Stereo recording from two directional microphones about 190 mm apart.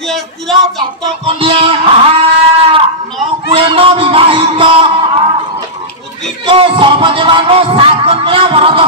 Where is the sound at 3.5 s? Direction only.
30° right (ahead or behind).